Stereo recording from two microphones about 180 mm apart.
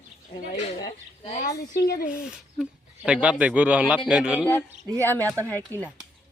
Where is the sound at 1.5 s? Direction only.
60° left (ahead or behind).